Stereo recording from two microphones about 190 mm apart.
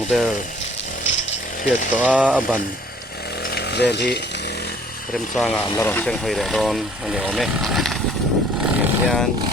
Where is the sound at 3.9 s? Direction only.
60° left (ahead or behind).